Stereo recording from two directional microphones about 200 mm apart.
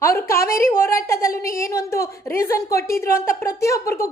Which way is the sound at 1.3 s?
45° left (ahead or behind).